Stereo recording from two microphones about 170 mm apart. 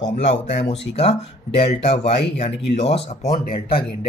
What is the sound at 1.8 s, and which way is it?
Speech, 35° left (ahead or behind).